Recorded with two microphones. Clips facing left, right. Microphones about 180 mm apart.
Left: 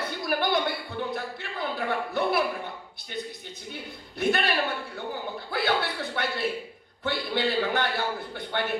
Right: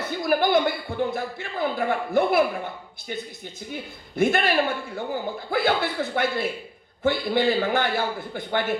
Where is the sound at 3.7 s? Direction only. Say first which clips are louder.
Right 8 dB; 50° right (ahead or behind).